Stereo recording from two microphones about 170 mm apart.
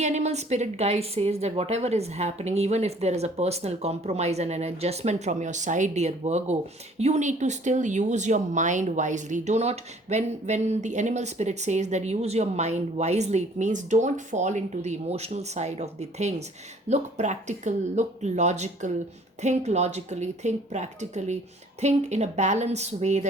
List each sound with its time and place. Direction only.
0.0 s a woman's voice: 40° right (ahead or behind)